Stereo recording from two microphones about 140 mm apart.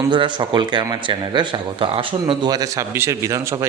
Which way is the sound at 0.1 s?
35° right (ahead or behind).